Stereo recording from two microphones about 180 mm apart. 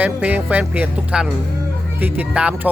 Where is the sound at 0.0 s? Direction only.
10° right (ahead or behind).